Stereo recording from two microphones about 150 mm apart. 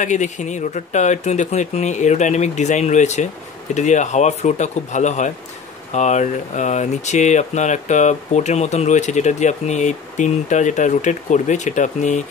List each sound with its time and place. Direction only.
0.0 s speech: 55° left (ahead or behind)